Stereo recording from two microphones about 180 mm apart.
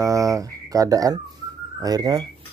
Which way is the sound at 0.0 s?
20° right (ahead or behind).